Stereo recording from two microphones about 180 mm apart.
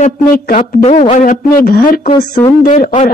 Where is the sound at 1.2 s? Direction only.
55° left (ahead or behind).